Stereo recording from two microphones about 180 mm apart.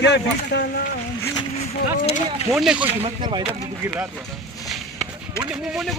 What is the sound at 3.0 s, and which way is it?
Speech, 25° right (ahead or behind).